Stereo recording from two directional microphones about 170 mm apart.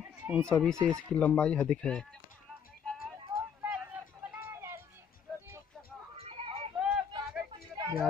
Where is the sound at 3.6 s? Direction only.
10° right (ahead or behind).